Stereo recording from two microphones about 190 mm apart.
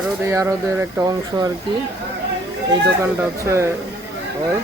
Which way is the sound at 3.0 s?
15° right (ahead or behind).